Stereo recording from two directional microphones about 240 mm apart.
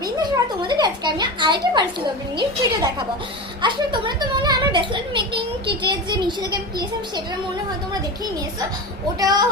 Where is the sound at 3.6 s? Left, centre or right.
Centre.